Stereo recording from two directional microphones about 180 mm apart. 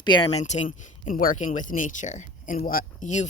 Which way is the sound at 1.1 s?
50° left (ahead or behind).